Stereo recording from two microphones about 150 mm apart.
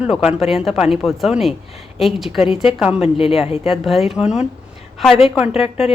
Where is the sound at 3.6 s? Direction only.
Centre (ahead or behind).